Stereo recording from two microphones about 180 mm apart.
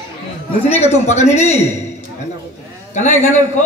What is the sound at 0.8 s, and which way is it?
Speech, 35° left (ahead or behind).